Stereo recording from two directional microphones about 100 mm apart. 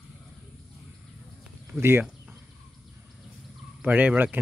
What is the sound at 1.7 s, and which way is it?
Speech, 25° right (ahead or behind).